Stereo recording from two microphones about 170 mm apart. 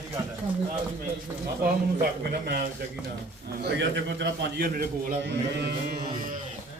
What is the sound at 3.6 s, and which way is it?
A man's voice, 85° right.